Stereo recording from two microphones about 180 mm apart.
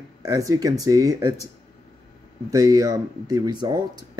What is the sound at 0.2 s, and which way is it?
Speech, 20° right (ahead or behind).